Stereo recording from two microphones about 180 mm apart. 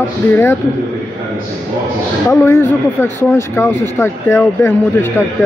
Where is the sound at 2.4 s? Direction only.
15° left (ahead or behind).